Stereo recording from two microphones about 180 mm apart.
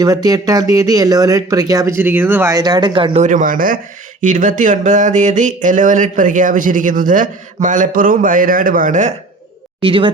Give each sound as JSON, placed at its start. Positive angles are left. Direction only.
{"t": 0.0, "sound": "speech", "side_deg": -20}
{"t": 3.2, "sound": "a sound", "side_deg": -45}
{"t": 9.8, "sound": "speech", "side_deg": -30}